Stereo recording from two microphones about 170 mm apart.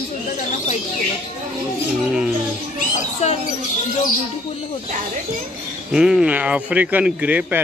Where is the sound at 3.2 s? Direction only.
40° left (ahead or behind).